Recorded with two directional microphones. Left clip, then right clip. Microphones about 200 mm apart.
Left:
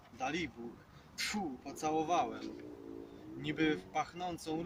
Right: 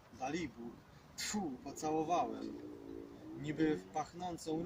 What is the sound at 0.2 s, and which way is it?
Speech, 10° right (ahead or behind).